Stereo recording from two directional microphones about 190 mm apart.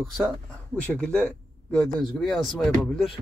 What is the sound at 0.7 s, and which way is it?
A man's voice, 5° left (ahead or behind).